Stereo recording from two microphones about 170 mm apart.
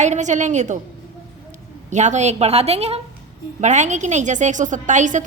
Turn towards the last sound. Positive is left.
turn(degrees=-45)  # may be behind; listen again after turning